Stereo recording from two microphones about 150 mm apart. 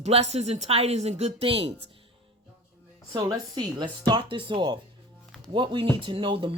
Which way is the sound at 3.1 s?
30° right (ahead or behind).